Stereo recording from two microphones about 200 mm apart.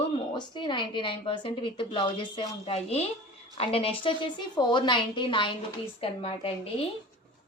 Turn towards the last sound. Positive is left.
turn(degrees=25)  # may be behind; listen again after turning